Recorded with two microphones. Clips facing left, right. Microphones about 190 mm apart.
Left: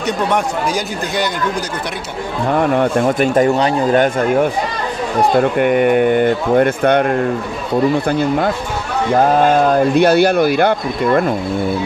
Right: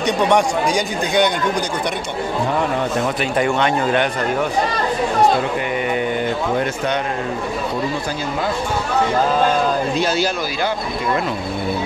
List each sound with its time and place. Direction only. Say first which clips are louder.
0.0 s speech: right 1 dB; 5° left (ahead or behind)
2.8 s speech: left 6 dB; 45° left (ahead or behind)
5.4 s speech: left 8 dB; 55° left (ahead or behind)